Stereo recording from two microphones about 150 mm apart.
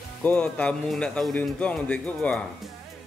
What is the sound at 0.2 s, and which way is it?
Speech, 10° left (ahead or behind).